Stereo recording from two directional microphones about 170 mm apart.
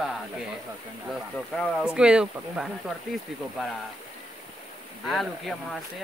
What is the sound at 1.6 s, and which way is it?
Speech, centre (ahead or behind).